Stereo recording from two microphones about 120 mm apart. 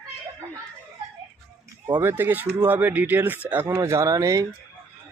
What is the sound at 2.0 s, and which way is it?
Speech, 15° right (ahead or behind).